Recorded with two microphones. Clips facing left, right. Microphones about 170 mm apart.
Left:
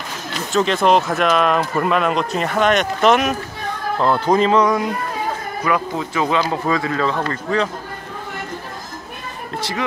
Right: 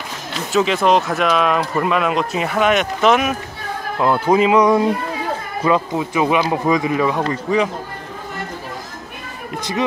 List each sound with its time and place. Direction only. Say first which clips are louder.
0.5 s speech: even; 5° right (ahead or behind)
4.6 s speech: right 4 dB; 25° right (ahead or behind); by 7.7 s 10° right (ahead or behind)
9.6 s speech: right 3 dB; 20° right (ahead or behind)